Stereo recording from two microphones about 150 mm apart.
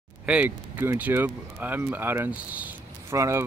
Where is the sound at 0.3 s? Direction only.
10° right (ahead or behind).